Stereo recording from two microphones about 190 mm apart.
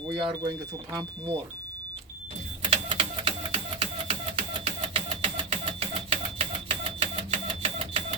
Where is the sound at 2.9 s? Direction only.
30° right (ahead or behind).